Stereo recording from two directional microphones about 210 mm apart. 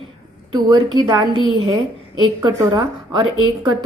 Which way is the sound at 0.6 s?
20° right (ahead or behind).